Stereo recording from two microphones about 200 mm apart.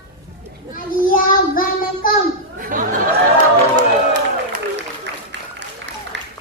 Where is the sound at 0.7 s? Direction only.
45° left (ahead or behind).